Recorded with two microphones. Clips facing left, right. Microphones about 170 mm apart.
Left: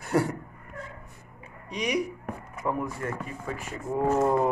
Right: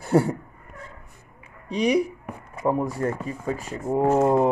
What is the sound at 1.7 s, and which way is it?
Speech, 30° right (ahead or behind).